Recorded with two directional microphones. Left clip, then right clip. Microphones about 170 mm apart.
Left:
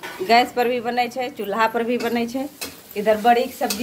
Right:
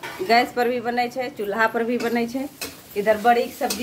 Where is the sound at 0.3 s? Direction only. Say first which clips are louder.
Left 2 dB; 15° right (ahead or behind).